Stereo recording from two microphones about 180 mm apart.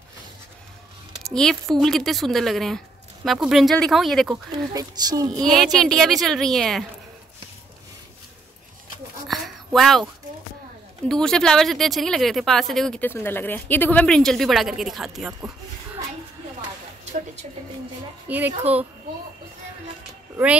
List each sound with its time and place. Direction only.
1.3 s speech: 5° left (ahead or behind)
4.7 s speech: 20° right (ahead or behind)
5.4 s speech: centre (ahead or behind)
9.3 s a sound: centre (ahead or behind)
11.1 s speech: 5° left (ahead or behind)
18.3 s a child's voice: 10° right (ahead or behind)